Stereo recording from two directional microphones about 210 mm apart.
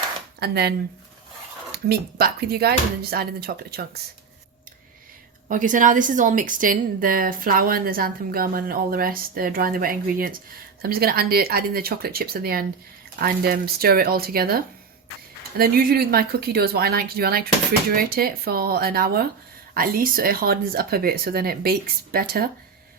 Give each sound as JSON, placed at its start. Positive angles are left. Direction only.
{"t": 0.3, "sound": "speech", "side_deg": -50}
{"t": 1.7, "sound": "a woman's voice", "side_deg": -50}
{"t": 5.5, "sound": "a woman's voice", "side_deg": -40}